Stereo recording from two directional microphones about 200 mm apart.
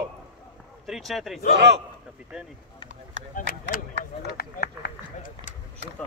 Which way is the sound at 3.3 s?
45° left (ahead or behind).